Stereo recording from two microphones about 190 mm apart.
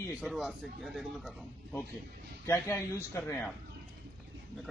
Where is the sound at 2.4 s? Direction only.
15° left (ahead or behind).